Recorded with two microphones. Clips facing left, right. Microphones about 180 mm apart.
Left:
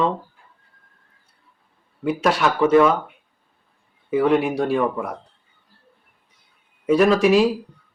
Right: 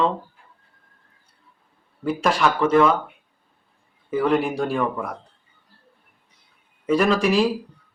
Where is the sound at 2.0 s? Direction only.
5° left (ahead or behind).